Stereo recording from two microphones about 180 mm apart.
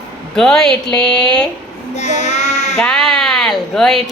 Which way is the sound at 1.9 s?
40° left (ahead or behind).